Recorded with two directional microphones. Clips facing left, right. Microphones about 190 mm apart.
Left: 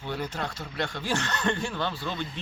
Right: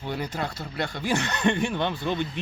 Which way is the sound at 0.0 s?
10° right (ahead or behind).